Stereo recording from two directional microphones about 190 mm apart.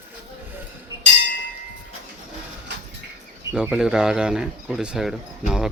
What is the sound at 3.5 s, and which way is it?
Speech, 5° right (ahead or behind).